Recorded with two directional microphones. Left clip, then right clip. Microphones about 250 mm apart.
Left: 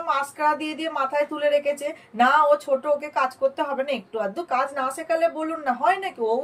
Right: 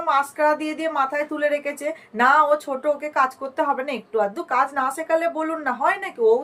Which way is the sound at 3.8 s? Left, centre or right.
Centre.